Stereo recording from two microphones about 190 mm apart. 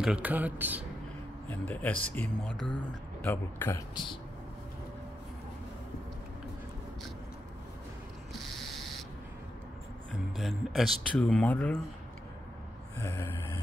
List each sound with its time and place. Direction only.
0.0 s speech: 5° right (ahead or behind)
1.5 s speech: 10° left (ahead or behind)
3.9 s speech: 25° left (ahead or behind)
8.3 s ratchet: centre (ahead or behind)
10.3 s speech: centre (ahead or behind)
12.9 s speech: 15° left (ahead or behind)